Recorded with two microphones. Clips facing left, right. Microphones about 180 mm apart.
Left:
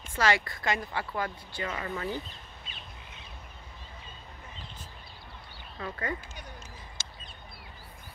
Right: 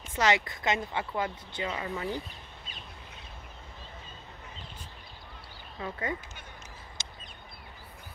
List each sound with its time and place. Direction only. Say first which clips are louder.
0.1 s speech: right 1 dB; 20° right (ahead or behind)
5.8 s speech: right 1 dB; 20° right (ahead or behind)
7.0 s a sound: right 1 dB; 20° right (ahead or behind)